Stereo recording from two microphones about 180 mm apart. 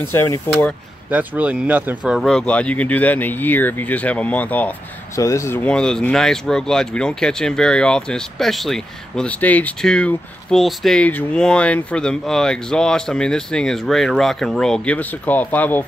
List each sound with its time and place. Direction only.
0.0 s speech: 10° left (ahead or behind)
1.1 s speech: 10° right (ahead or behind)
2.1 s speech: 5° left (ahead or behind)